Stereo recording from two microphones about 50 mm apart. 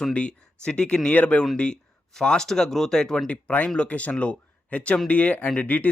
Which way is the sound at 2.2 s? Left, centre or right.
Centre.